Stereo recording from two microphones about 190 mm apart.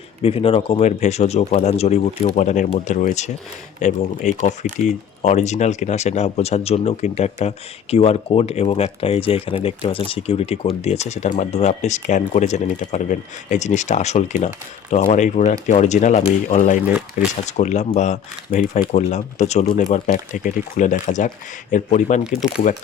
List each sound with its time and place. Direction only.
0.2 s speech: 30° left (ahead or behind); by 18.9 s 45° left (ahead or behind)
18.9 s speech: 35° left (ahead or behind)